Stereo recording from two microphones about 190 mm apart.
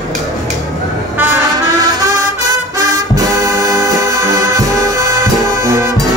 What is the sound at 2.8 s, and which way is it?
Music, 20° right (ahead or behind).